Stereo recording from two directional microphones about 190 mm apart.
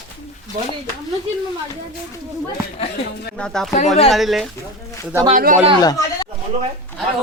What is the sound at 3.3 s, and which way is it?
Speech, 5° left (ahead or behind).